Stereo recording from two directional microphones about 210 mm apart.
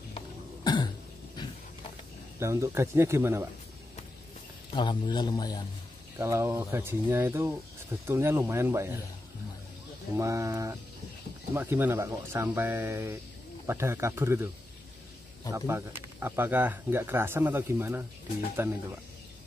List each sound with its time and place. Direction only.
2.3 s speech: 15° right (ahead or behind)
4.6 s a man's voice: 20° left (ahead or behind)
6.1 s speech: 10° right (ahead or behind)
10.1 s speech: 15° right (ahead or behind)
15.5 s speech: 15° right (ahead or behind)